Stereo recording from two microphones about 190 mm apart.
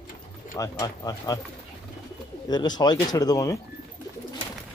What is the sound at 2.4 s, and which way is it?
Speech, 20° left (ahead or behind).